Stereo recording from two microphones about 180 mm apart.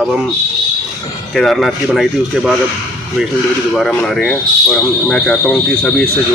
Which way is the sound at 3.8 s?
5° left (ahead or behind).